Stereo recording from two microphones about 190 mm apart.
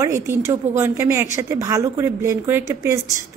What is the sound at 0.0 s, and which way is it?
A woman's voice, 15° right (ahead or behind).